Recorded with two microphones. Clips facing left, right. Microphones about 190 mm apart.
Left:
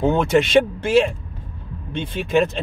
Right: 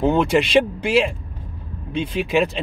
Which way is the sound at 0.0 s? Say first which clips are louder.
Even; centre (ahead or behind).